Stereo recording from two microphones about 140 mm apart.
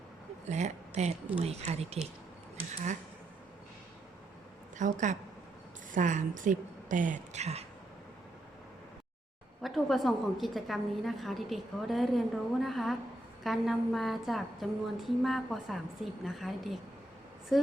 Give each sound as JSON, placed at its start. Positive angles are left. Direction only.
{"t": 0.4, "sound": "speech", "side_deg": -55}
{"t": 4.8, "sound": "speech", "side_deg": -60}
{"t": 9.6, "sound": "a woman's voice", "side_deg": 0}